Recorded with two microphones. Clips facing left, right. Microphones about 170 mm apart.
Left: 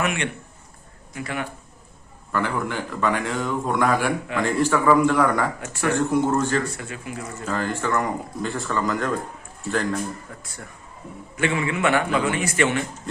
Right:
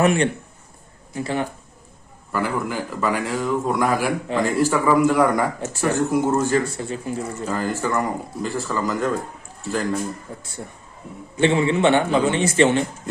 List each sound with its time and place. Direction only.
0.0 s speech: 35° right (ahead or behind)
2.3 s a man's voice: 5° right (ahead or behind)
4.3 s speech: 30° right (ahead or behind)
4.6 s a man's voice: 5° right (ahead or behind)
5.5 s a man's voice: 25° right (ahead or behind)
6.1 s a man's voice: 10° right (ahead or behind)
6.7 s speech: 30° right (ahead or behind)
7.4 s a man's voice: 10° right (ahead or behind)
10.3 s a man's voice: 30° right (ahead or behind)